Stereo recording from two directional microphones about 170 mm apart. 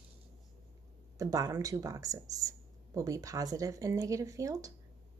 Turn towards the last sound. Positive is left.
turn(degrees=-20)  # may be behind; listen again after turning